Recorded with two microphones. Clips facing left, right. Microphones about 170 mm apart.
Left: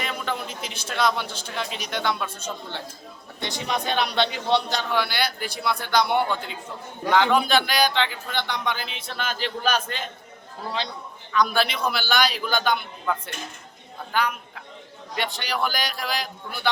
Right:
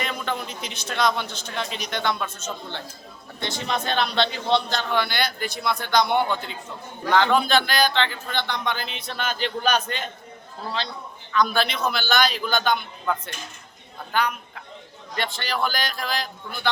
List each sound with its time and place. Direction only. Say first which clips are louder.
0.0 s a man's voice: right 1 dB; 5° left (ahead or behind)
10.8 s a man's voice: even; 15° left (ahead or behind)